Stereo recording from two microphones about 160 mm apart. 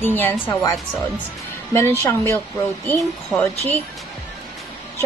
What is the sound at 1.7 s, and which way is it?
Speech, 15° left (ahead or behind).